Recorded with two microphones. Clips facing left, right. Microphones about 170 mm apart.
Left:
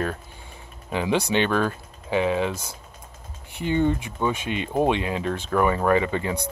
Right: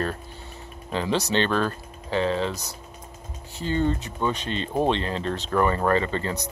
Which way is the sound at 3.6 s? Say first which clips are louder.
Left 2 dB; 15° left (ahead or behind).